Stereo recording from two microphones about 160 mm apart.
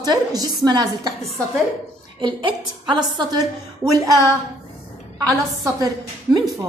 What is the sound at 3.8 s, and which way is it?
Speech, centre (ahead or behind).